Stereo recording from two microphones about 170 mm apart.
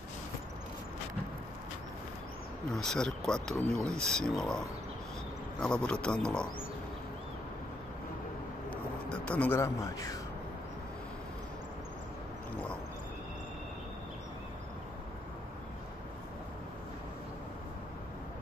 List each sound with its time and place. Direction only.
2.7 s speech: 5° left (ahead or behind)
9.2 s a man's voice: 10° left (ahead or behind)